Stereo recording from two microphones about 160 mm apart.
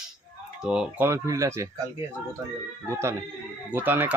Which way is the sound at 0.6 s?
5° right (ahead or behind).